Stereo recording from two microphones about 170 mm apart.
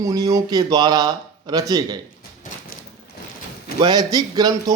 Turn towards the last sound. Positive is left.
turn(degrees=-25)  # may be behind; listen again after turning